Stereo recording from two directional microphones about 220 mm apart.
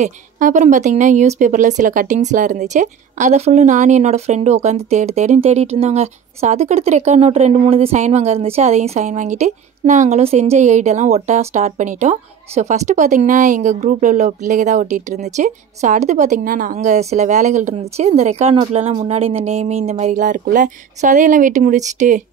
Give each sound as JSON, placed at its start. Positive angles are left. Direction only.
{"t": 0.0, "sound": "a woman's voice", "side_deg": -35}